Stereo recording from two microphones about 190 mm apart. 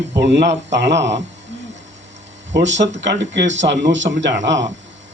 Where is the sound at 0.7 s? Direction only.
70° right (ahead or behind).